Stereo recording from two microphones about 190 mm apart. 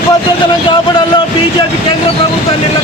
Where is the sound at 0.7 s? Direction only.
25° left (ahead or behind).